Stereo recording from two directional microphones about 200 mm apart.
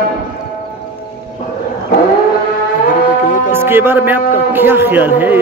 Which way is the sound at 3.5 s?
10° right (ahead or behind).